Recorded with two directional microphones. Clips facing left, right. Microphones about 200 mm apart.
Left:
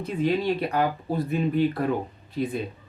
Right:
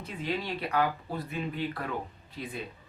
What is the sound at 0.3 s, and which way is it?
Speech, 45° left (ahead or behind).